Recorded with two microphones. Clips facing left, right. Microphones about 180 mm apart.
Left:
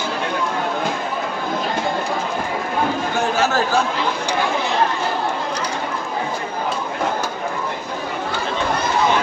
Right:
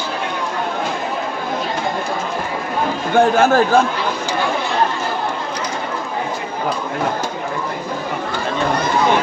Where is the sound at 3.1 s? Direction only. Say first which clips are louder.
Right 9 dB; 50° right (ahead or behind).